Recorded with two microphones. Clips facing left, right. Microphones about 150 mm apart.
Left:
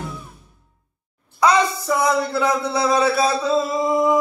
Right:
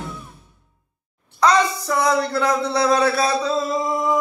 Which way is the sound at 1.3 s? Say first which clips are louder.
Even; 5° left (ahead or behind).